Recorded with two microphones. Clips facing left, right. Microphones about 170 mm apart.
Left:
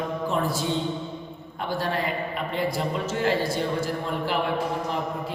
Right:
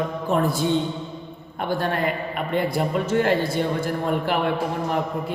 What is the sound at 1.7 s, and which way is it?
A man's voice, 55° right (ahead or behind).